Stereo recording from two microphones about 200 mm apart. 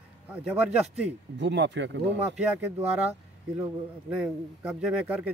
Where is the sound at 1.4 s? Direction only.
60° right (ahead or behind).